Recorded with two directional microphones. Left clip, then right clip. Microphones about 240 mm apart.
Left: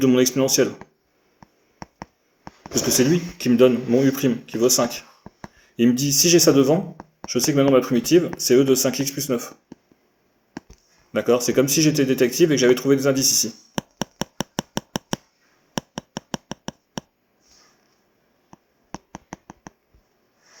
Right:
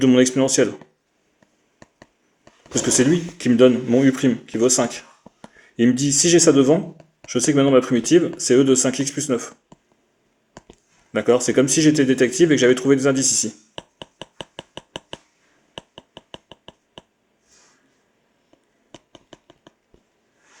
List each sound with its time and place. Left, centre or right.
0.0 s speech: right
2.7 s speech: right
11.1 s speech: right